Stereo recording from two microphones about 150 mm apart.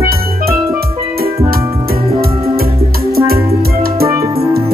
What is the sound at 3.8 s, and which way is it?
Music, 90° right.